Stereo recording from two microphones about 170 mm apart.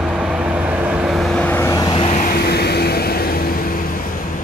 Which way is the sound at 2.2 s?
65° left (ahead or behind).